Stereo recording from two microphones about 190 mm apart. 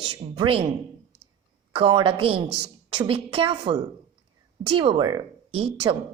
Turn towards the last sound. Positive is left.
turn(degrees=-30)  # may be behind; listen again after turning